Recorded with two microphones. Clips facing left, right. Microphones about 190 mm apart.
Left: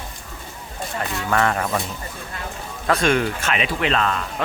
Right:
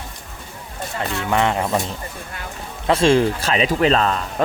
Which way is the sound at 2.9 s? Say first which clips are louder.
Right 4 dB; 25° right (ahead or behind).